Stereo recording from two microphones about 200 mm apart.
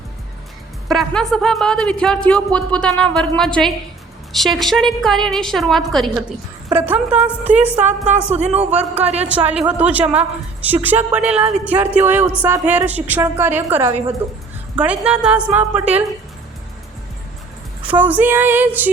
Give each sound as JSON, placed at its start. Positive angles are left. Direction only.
{"t": 0.9, "sound": "a woman's voice", "side_deg": 0}
{"t": 7.8, "sound": "speech", "side_deg": -35}
{"t": 9.2, "sound": "a woman's voice", "side_deg": -5}
{"t": 17.9, "sound": "a woman's voice", "side_deg": -10}